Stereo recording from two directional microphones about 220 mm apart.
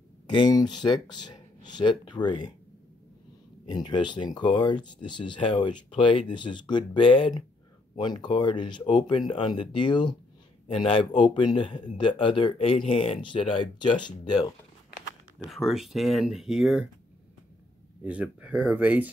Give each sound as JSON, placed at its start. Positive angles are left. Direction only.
{"t": 0.3, "sound": "speech", "side_deg": 20}
{"t": 3.6, "sound": "speech", "side_deg": 20}
{"t": 15.3, "sound": "speech", "side_deg": 0}
{"t": 18.0, "sound": "speech", "side_deg": -5}